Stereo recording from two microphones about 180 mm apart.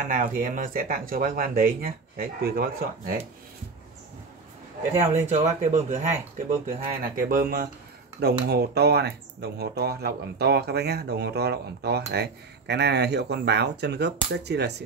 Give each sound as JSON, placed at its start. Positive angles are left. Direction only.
{"t": 0.1, "sound": "speech", "side_deg": -50}
{"t": 4.9, "sound": "speech", "side_deg": -40}
{"t": 7.0, "sound": "speech", "side_deg": -50}
{"t": 8.2, "sound": "speech", "side_deg": -65}